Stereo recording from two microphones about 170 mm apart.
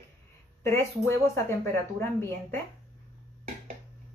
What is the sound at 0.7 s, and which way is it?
Speech, 15° left (ahead or behind).